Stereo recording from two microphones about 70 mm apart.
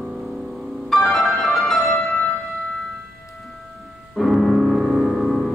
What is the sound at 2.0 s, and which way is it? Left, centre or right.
Music, left.